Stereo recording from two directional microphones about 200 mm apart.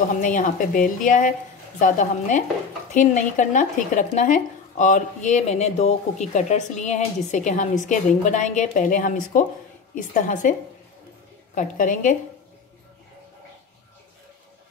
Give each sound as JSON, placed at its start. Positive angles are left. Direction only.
{"t": 0.2, "sound": "speech", "side_deg": 40}
{"t": 11.5, "sound": "speech", "side_deg": 40}